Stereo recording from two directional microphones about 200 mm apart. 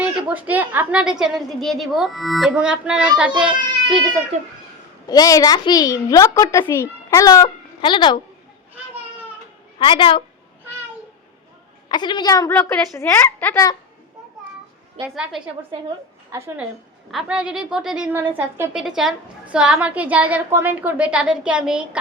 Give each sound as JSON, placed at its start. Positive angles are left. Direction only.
{"t": 0.0, "sound": "a woman's voice", "side_deg": -10}
{"t": 5.0, "sound": "a woman's voice", "side_deg": 20}
{"t": 9.7, "sound": "a woman's voice", "side_deg": 25}
{"t": 11.9, "sound": "a woman's voice", "side_deg": 20}
{"t": 15.1, "sound": "a woman's voice", "side_deg": 0}
{"t": 16.3, "sound": "a woman's voice", "side_deg": -15}
{"t": 17.1, "sound": "a woman's voice", "side_deg": -5}